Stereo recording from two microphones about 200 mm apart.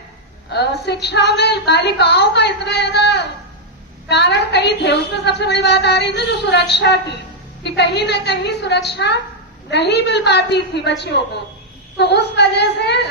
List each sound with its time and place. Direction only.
0.5 s a woman's voice: 55° left (ahead or behind)